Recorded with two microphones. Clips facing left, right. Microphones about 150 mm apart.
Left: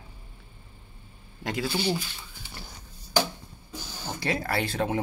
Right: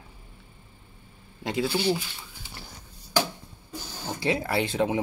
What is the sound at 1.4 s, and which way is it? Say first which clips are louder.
Speech: right 3 dB; 20° right (ahead or behind).